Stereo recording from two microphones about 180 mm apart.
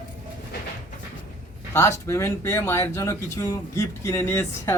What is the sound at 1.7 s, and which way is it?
Speech, 15° left (ahead or behind).